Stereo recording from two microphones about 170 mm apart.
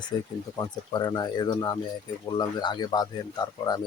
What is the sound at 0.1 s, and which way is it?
Speech, 25° left (ahead or behind).